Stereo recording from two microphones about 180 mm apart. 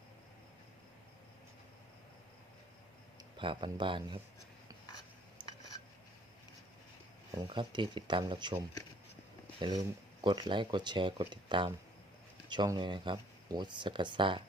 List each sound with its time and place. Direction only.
3.3 s speech: 30° right (ahead or behind)
5.4 s a sound: 25° right (ahead or behind)
7.3 s speech: 25° right (ahead or behind)